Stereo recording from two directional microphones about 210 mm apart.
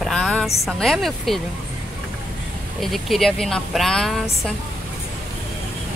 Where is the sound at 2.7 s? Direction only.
Centre (ahead or behind).